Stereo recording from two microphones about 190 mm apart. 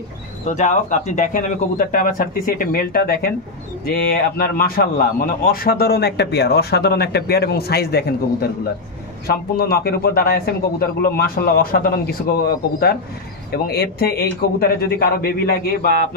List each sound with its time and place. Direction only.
0.5 s a man's voice: 40° left (ahead or behind); by 15.9 s 55° left (ahead or behind)